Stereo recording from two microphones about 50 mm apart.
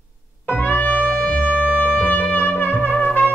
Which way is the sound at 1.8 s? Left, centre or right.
Left.